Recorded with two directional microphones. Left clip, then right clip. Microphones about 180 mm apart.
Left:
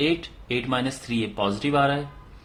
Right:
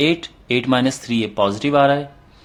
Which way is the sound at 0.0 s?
40° right (ahead or behind).